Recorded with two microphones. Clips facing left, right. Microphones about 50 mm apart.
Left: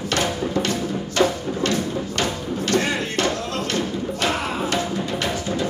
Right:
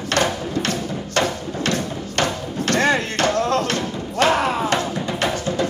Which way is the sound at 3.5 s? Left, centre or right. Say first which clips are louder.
Right 3 dB; right.